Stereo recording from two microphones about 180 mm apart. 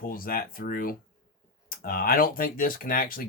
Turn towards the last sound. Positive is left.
turn(degrees=50)  # may be behind; listen again after turning